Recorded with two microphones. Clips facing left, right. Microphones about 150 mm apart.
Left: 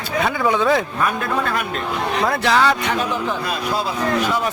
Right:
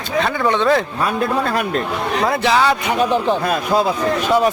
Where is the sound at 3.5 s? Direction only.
50° right (ahead or behind).